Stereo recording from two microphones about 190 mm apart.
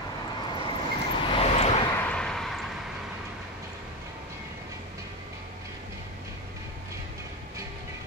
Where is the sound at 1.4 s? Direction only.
35° left (ahead or behind).